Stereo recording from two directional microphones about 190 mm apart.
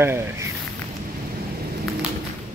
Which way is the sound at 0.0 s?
15° right (ahead or behind).